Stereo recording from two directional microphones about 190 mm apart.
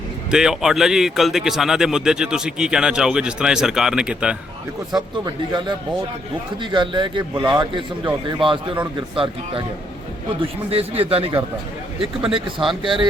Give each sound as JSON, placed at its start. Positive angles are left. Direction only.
{"t": 0.3, "sound": "speech", "side_deg": -5}
{"t": 5.2, "sound": "a man's voice", "side_deg": -25}
{"t": 12.6, "sound": "a man's voice", "side_deg": -25}